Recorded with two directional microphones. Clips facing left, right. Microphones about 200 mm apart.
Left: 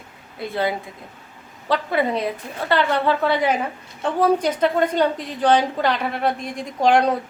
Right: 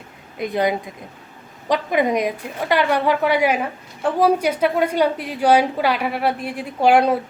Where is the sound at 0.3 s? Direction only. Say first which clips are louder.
Right 3 dB; 20° right (ahead or behind).